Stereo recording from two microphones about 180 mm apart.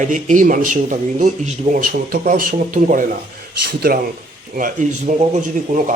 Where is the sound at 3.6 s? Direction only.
60° right (ahead or behind).